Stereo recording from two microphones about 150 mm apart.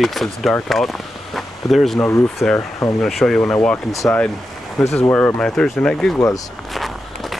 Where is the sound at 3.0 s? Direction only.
Centre (ahead or behind).